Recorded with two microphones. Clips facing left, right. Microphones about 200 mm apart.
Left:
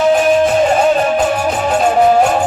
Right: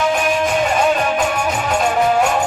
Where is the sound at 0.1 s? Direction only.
35° left (ahead or behind).